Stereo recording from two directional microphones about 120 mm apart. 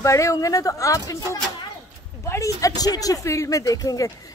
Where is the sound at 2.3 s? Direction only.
25° left (ahead or behind).